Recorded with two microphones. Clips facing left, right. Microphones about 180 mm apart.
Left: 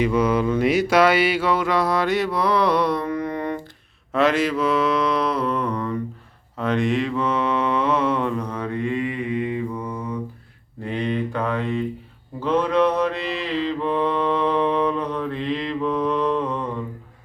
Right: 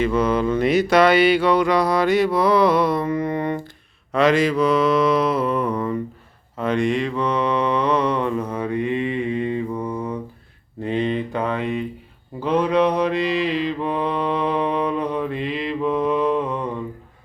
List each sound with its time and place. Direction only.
0.0 s mantra: 10° left (ahead or behind); by 16.6 s 10° right (ahead or behind)